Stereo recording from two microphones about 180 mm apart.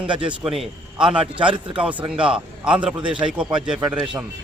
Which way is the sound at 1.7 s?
5° right (ahead or behind).